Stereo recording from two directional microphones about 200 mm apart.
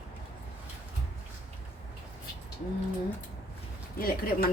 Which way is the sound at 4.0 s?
50° left (ahead or behind).